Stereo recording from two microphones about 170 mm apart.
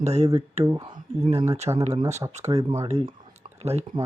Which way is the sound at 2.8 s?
35° right (ahead or behind).